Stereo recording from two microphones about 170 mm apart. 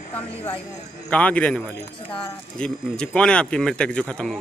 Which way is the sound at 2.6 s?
5° left (ahead or behind).